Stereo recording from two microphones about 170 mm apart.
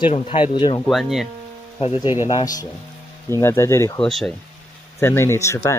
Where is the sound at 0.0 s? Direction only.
35° left (ahead or behind).